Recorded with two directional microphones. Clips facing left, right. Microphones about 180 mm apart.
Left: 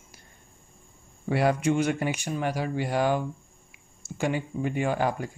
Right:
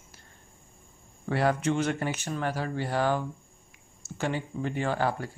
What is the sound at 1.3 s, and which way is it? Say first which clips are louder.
A man's voice: left 2 dB; 15° left (ahead or behind).